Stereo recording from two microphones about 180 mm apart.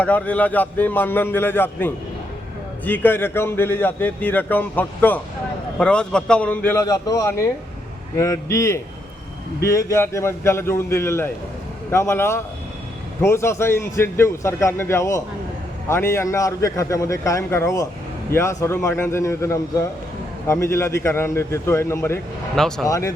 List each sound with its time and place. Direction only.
0.0 s a man's voice: 10° left (ahead or behind)
22.5 s a man's voice: centre (ahead or behind)
22.9 s a man's voice: 15° left (ahead or behind)